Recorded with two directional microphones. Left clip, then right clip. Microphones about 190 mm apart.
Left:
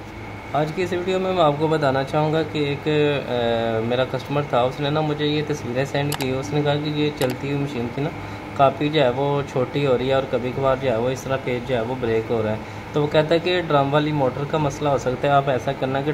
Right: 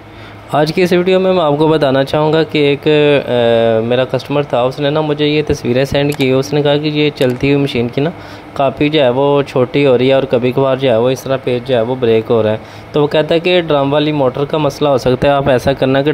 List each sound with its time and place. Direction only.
0.6 s speech: 55° right (ahead or behind)